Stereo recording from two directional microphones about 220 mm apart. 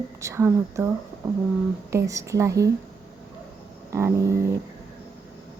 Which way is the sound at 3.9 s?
15° right (ahead or behind).